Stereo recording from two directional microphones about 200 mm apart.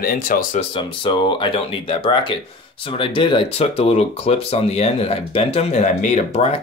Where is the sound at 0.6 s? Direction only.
25° left (ahead or behind).